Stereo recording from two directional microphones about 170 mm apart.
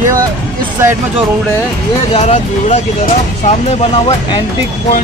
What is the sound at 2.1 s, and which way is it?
Speech, 35° left (ahead or behind).